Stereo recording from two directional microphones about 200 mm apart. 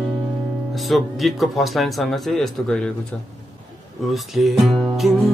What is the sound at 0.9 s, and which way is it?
Music, centre (ahead or behind).